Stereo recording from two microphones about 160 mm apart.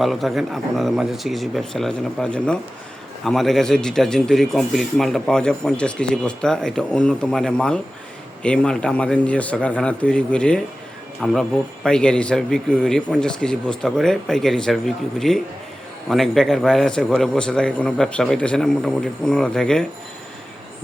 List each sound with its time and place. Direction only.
0.0 s a man's voice: centre (ahead or behind)